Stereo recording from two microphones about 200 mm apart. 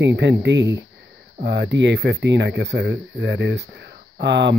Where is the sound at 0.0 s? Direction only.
60° right (ahead or behind).